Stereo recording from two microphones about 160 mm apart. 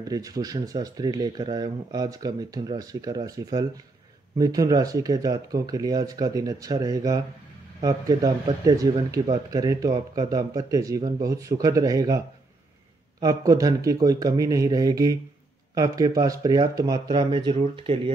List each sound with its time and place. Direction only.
0.1 s speech: 20° right (ahead or behind)
13.2 s speech: 20° right (ahead or behind)